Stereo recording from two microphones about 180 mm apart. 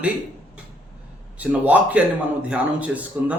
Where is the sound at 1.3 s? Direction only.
10° right (ahead or behind).